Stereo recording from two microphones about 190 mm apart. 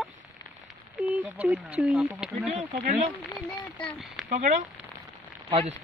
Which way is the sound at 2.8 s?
45° right (ahead or behind).